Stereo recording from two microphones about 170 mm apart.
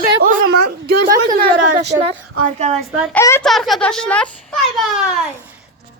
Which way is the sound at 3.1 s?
15° left (ahead or behind).